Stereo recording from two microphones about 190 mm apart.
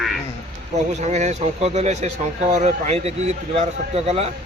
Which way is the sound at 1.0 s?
35° right (ahead or behind).